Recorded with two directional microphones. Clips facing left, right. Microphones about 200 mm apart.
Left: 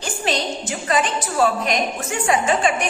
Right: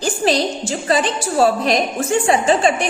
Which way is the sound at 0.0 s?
35° right (ahead or behind).